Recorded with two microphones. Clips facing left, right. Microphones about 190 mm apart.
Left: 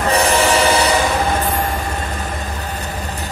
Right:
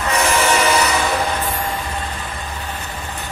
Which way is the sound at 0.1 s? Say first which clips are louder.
Left 2 dB; 35° left (ahead or behind).